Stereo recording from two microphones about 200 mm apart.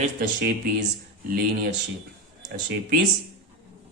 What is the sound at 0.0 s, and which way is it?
Speech, 50° right (ahead or behind).